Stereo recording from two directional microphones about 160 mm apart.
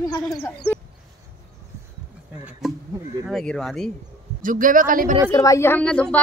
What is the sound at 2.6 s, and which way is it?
Speech, centre (ahead or behind).